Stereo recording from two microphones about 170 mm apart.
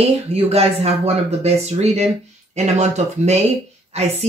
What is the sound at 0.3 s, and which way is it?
Speech, 35° right (ahead or behind).